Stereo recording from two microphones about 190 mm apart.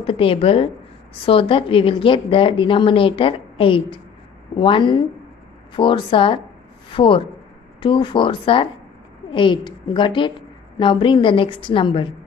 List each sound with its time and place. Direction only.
0.0 s a woman's voice: 30° left (ahead or behind)